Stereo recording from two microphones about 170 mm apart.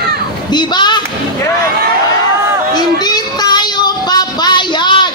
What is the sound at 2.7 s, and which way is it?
Child singing, 25° left (ahead or behind).